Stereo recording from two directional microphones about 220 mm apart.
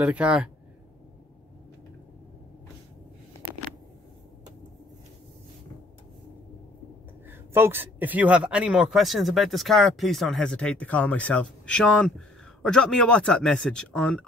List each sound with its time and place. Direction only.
0.0 s speech: 5° right (ahead or behind)
7.2 s speech: 10° right (ahead or behind)